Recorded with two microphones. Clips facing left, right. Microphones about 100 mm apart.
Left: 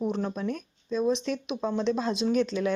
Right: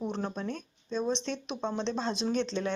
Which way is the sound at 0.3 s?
30° right (ahead or behind).